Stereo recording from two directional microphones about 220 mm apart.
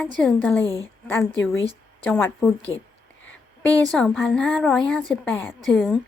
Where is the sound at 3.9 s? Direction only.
5° left (ahead or behind).